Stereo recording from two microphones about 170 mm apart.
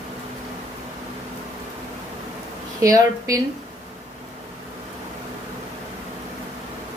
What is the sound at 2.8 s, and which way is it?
Speech, 20° right (ahead or behind).